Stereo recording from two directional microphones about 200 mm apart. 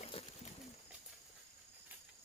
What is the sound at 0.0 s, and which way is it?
Pigeon, 30° left (ahead or behind).